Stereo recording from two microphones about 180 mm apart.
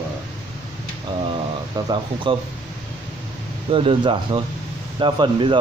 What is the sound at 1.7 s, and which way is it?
Speech, 25° right (ahead or behind).